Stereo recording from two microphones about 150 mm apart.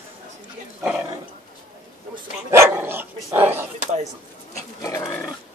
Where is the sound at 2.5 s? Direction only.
15° right (ahead or behind).